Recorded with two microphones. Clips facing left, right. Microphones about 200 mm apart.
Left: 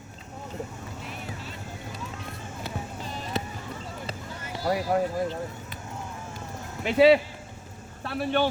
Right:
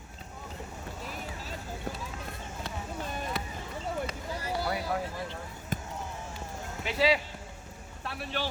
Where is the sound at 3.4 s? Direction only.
25° left (ahead or behind).